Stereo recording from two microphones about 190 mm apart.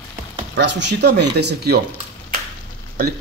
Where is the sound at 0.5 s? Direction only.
70° right (ahead or behind).